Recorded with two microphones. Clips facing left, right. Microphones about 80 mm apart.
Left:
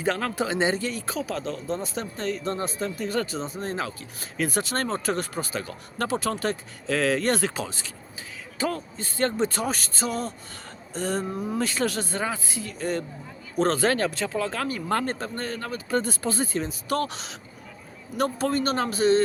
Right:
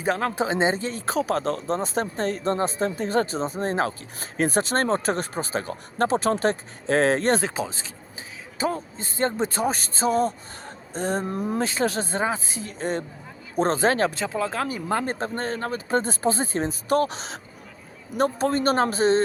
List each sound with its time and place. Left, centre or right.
0.0 s speech: right
11.3 s speech: right
11.6 s speech: right
15.2 s speech: right